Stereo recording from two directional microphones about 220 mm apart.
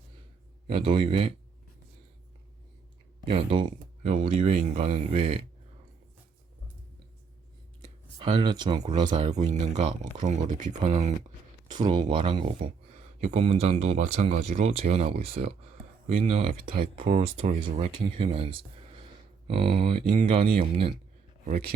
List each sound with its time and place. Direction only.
0.7 s speech: 25° right (ahead or behind)
3.2 s speech: 25° right (ahead or behind)
8.2 s speech: 20° right (ahead or behind)
21.4 s speech: 40° right (ahead or behind)